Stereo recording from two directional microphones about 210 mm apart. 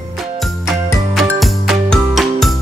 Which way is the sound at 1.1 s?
Centre (ahead or behind).